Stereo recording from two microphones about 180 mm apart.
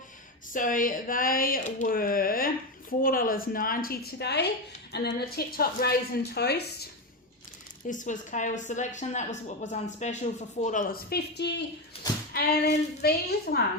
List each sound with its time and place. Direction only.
0.5 s a woman's voice: 45° left (ahead or behind); by 6.8 s 65° left (ahead or behind)
7.9 s a woman's voice: 45° left (ahead or behind); by 11.6 s 70° left (ahead or behind)
11.9 s speech: 30° left (ahead or behind)
12.3 s a woman's voice: 60° left (ahead or behind)